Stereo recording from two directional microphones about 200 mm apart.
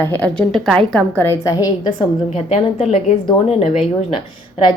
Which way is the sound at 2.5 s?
30° left (ahead or behind).